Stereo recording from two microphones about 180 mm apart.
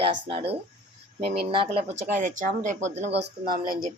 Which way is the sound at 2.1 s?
45° right (ahead or behind).